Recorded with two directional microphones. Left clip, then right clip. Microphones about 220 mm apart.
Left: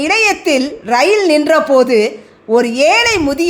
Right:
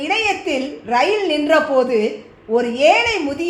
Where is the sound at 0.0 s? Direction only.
45° left (ahead or behind).